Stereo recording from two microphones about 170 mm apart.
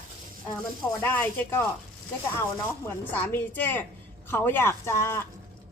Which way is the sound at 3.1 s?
10° left (ahead or behind).